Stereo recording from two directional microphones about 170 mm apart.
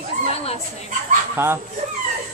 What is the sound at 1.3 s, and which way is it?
Speech, 15° right (ahead or behind).